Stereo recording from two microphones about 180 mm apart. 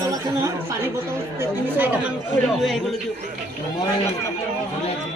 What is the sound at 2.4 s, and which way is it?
Speech, centre (ahead or behind).